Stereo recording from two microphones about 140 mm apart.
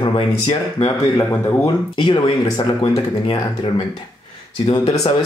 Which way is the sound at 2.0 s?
35° left (ahead or behind).